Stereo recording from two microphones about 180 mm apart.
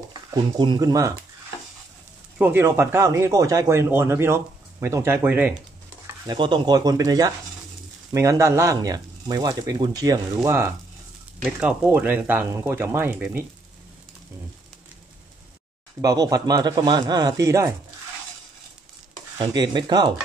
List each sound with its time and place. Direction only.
0.3 s speech: 25° right (ahead or behind)
2.3 s speech: 10° right (ahead or behind)
6.2 s speech: 25° right (ahead or behind)
16.0 s speech: 20° right (ahead or behind)
19.3 s speech: 25° right (ahead or behind)